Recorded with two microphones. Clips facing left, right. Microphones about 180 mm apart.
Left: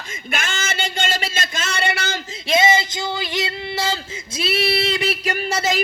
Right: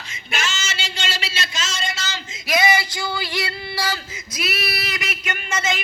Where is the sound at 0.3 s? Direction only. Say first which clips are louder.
Left 2 dB; 55° left (ahead or behind).